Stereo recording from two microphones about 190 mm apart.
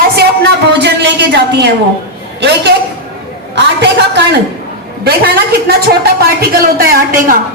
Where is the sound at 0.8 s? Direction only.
65° right (ahead or behind).